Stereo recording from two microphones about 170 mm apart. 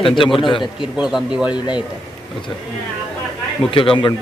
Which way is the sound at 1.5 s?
25° left (ahead or behind).